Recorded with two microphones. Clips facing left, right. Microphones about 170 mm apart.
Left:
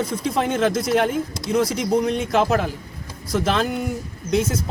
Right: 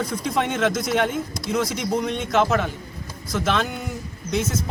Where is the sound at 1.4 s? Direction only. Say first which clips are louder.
Left 4 dB; 30° left (ahead or behind).